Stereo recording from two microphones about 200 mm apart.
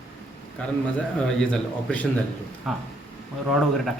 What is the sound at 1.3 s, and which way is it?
A man's voice, 5° left (ahead or behind).